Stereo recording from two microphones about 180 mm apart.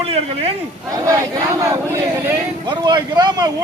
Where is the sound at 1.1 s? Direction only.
15° right (ahead or behind).